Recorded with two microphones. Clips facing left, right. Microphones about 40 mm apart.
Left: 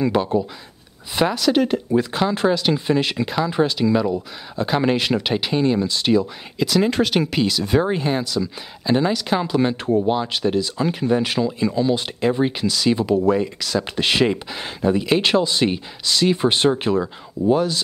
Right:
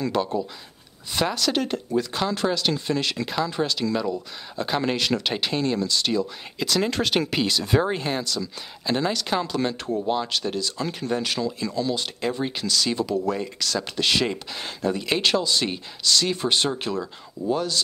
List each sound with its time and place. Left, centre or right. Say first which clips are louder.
0.0 s speech: left 5 dB; centre
6.6 s speech: left 5 dB; centre
13.8 s speech: left 5 dB; left